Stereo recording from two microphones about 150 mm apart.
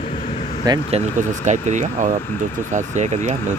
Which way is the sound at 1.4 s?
55° right (ahead or behind).